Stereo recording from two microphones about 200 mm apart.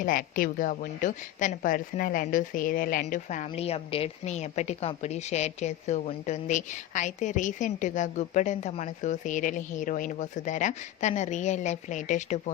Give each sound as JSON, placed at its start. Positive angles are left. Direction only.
{"t": 0.0, "sound": "a woman's voice", "side_deg": 45}